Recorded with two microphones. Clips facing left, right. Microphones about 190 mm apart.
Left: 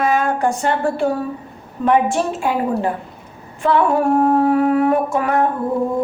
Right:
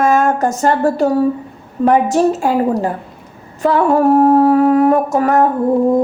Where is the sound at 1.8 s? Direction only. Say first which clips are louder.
Right 4 dB; 40° right (ahead or behind).